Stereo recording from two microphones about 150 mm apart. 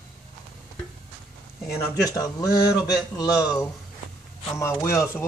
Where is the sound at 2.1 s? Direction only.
25° left (ahead or behind).